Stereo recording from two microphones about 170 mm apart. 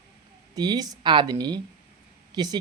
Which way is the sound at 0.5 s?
25° right (ahead or behind).